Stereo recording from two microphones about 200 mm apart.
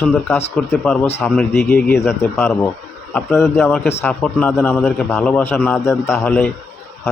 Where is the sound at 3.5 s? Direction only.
10° left (ahead or behind).